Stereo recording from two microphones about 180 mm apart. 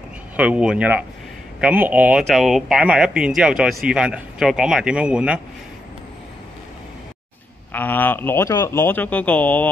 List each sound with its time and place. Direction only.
0.4 s speech: 5° right (ahead or behind)
7.7 s speech: 10° left (ahead or behind)